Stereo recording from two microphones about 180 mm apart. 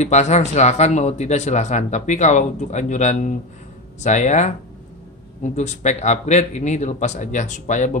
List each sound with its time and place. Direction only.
0.0 s speech: 40° left (ahead or behind)